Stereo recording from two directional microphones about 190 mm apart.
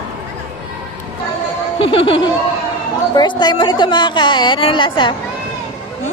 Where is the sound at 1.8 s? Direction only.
30° left (ahead or behind).